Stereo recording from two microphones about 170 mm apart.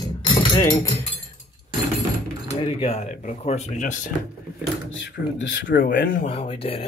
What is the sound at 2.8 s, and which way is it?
Speech, 40° left (ahead or behind).